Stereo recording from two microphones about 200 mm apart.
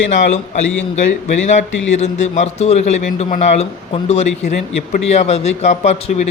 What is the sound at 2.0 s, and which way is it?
A man's voice, 35° left (ahead or behind).